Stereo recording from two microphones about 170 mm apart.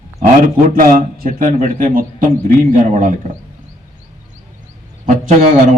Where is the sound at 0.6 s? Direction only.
55° right (ahead or behind).